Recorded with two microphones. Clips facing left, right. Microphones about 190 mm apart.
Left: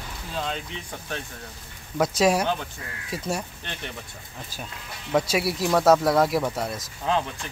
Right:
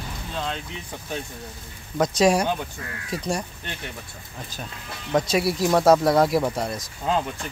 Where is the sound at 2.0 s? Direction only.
5° left (ahead or behind).